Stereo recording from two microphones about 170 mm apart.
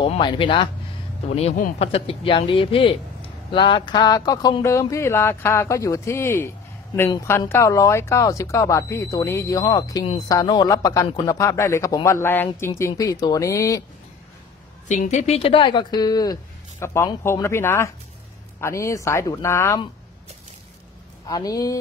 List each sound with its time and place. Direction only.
0.0 s a man's voice: 30° left (ahead or behind)
14.9 s a man's voice: 45° left (ahead or behind); by 19.8 s 15° left (ahead or behind)
21.3 s a man's voice: 20° left (ahead or behind)